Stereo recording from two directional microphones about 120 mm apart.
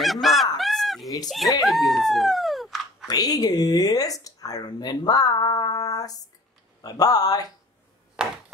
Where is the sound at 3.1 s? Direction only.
30° left (ahead or behind).